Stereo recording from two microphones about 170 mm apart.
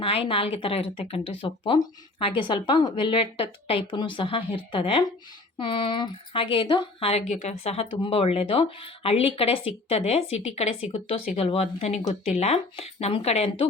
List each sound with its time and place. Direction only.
0.0 s speech: 35° left (ahead or behind)